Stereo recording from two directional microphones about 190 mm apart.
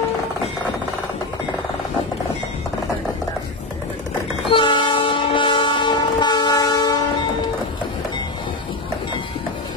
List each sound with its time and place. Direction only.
4.5 s train: 25° left (ahead or behind)